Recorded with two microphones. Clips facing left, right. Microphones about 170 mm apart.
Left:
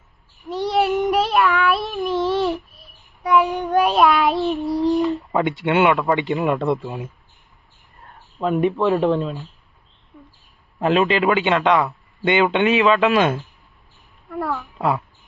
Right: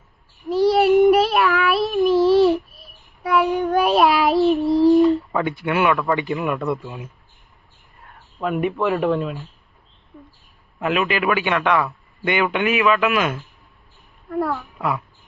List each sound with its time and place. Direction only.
0.5 s child singing: centre (ahead or behind)
5.3 s a man's voice: 20° left (ahead or behind)
8.4 s speech: 5° right (ahead or behind)
10.8 s a man's voice: 30° left (ahead or behind)
14.8 s a man's voice: 30° left (ahead or behind)